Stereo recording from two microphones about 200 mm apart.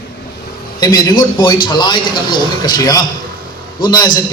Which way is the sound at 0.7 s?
20° left (ahead or behind).